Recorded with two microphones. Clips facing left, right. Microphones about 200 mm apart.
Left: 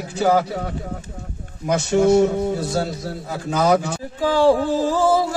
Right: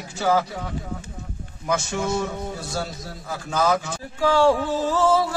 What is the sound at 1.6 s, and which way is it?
Chant, 35° left (ahead or behind).